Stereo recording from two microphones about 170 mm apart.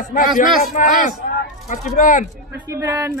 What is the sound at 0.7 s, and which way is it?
Speech, 50° left (ahead or behind).